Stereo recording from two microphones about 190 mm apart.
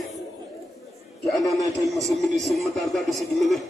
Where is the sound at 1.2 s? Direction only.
Centre (ahead or behind).